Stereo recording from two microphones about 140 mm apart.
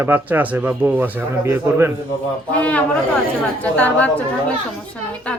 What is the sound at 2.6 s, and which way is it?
A woman's voice, 10° left (ahead or behind).